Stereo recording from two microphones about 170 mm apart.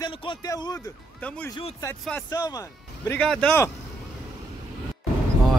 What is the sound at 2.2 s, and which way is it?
Speech, 20° left (ahead or behind).